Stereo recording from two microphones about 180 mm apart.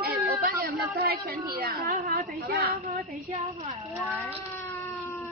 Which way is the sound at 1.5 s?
55° right (ahead or behind).